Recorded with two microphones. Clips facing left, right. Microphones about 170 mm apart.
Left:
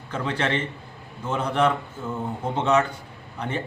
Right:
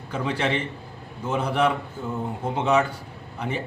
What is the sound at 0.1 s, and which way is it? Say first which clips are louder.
Speech: right 1 dB; 10° right (ahead or behind).